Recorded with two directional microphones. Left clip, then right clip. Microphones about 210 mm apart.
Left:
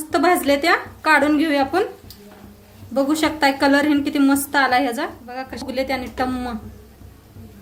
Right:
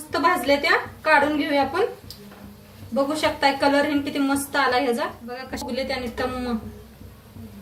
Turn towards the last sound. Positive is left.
turn(degrees=50)  # may be behind; listen again after turning